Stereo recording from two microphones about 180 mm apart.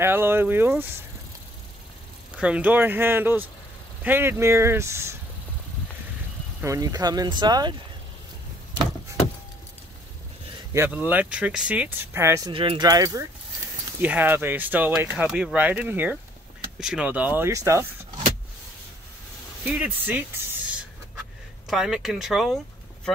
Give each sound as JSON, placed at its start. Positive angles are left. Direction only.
{"t": 0.0, "sound": "speech", "side_deg": -15}
{"t": 2.3, "sound": "speech", "side_deg": -5}
{"t": 6.6, "sound": "speech", "side_deg": -20}
{"t": 10.7, "sound": "speech", "side_deg": -10}
{"t": 12.4, "sound": "speech", "side_deg": -25}
{"t": 19.6, "sound": "speech", "side_deg": -10}